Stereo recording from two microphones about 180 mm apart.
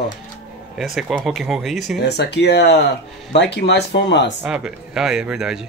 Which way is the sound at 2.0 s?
70° left (ahead or behind).